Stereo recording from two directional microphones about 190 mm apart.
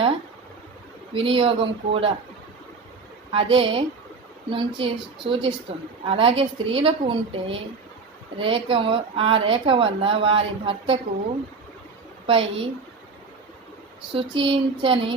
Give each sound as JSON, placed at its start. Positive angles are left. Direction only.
{"t": 1.1, "sound": "speech", "side_deg": -30}
{"t": 3.3, "sound": "speech", "side_deg": -30}
{"t": 12.2, "sound": "a woman's voice", "side_deg": -30}
{"t": 14.1, "sound": "speech", "side_deg": -30}